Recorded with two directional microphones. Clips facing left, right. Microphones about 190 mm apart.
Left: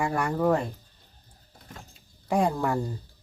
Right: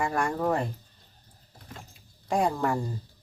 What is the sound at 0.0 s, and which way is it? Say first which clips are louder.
Speech: left 2 dB; centre (ahead or behind).